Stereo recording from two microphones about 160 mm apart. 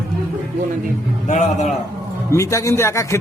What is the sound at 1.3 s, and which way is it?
Speech, 50° left (ahead or behind).